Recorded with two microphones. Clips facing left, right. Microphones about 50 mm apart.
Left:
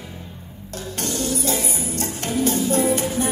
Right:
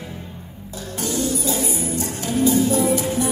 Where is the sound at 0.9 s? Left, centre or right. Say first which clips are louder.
Right 2 dB; left.